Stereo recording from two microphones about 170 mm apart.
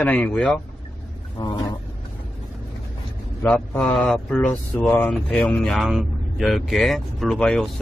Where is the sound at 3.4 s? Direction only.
5° left (ahead or behind).